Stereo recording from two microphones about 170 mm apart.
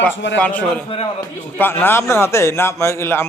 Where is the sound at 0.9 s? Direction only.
35° left (ahead or behind).